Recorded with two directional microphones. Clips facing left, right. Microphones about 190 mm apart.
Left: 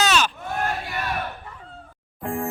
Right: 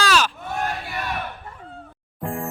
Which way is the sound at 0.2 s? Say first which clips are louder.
Even; centre (ahead or behind).